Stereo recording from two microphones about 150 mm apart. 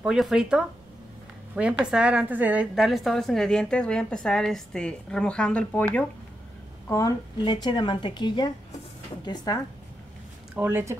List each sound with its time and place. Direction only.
0.0 s a woman's voice: 5° right (ahead or behind)
6.9 s a woman's voice: 20° left (ahead or behind)
10.5 s speech: 15° right (ahead or behind)